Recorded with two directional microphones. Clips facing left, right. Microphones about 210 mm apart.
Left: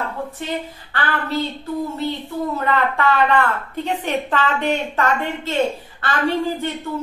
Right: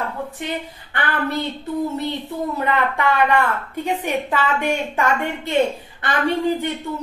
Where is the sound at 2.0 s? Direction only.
20° right (ahead or behind).